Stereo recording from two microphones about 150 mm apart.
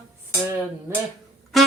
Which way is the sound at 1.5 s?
Centre (ahead or behind).